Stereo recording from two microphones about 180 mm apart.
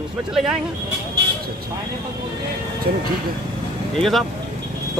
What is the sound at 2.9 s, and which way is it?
Speech, 55° right (ahead or behind).